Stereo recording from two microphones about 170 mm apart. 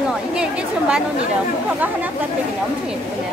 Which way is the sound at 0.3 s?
5° right (ahead or behind).